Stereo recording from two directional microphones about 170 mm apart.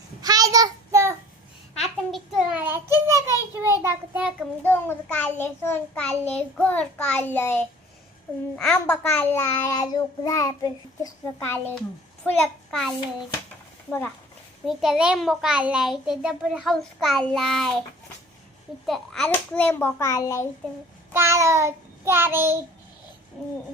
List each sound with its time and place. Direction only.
0.2 s child singing: 20° right (ahead or behind)
1.8 s a sound: centre (ahead or behind)
3.5 s child singing: 15° right (ahead or behind)
4.6 s a child's voice: 10° left (ahead or behind)
12.2 s a child's voice: centre (ahead or behind)
14.7 s a child's voice: centre (ahead or behind)
18.9 s a child's voice: centre (ahead or behind); by 20.5 s 20° left (ahead or behind)
21.1 s child singing: 15° right (ahead or behind)